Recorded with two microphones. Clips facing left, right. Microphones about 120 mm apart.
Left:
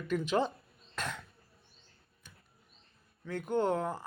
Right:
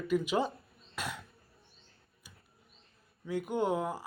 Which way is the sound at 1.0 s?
10° right (ahead or behind).